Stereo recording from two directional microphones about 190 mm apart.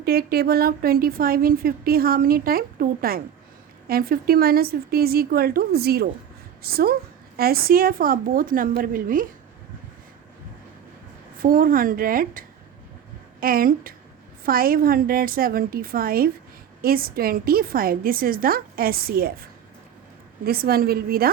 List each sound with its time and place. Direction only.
0.0 s a woman's voice: 55° right (ahead or behind)
11.3 s a woman's voice: 45° right (ahead or behind)